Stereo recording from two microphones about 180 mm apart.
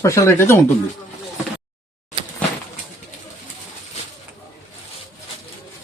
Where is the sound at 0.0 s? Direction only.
15° left (ahead or behind).